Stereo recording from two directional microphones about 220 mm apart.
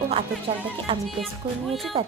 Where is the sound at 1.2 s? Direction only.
Centre (ahead or behind).